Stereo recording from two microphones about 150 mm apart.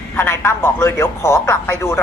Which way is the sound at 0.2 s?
15° left (ahead or behind).